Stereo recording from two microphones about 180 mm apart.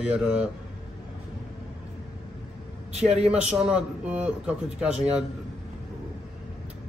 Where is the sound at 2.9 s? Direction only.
40° right (ahead or behind).